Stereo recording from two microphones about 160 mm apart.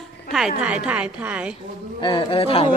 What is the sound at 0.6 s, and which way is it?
Speech, 5° right (ahead or behind).